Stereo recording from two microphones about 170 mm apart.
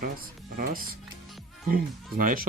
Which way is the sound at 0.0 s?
55° right (ahead or behind).